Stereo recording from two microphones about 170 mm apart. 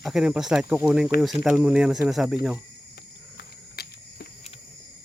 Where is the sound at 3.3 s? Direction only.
70° left (ahead or behind).